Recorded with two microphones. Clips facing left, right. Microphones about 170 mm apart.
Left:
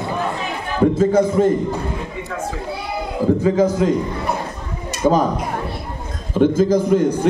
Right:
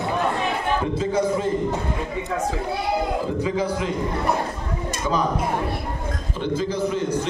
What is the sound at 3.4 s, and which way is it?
Speech, 45° left (ahead or behind).